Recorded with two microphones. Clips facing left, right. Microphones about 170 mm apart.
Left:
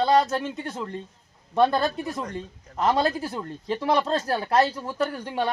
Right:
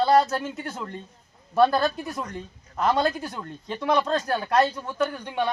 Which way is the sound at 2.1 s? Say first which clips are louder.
Left 2 dB; 25° left (ahead or behind).